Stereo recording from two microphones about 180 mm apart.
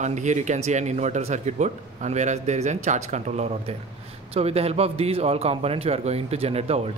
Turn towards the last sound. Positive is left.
turn(degrees=-35)  # may be behind; listen again after turning